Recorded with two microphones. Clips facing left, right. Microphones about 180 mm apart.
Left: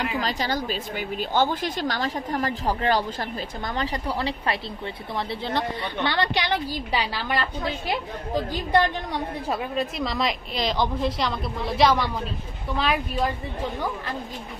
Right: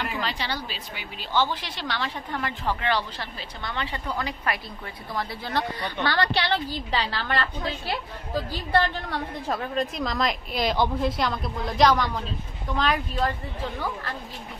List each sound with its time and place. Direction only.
0.2 s a woman's voice: 40° left (ahead or behind); by 13.3 s 10° left (ahead or behind)